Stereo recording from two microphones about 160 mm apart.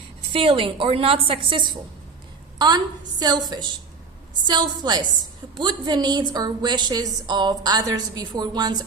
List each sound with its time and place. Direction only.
0.3 s a woman's voice: 35° right (ahead or behind)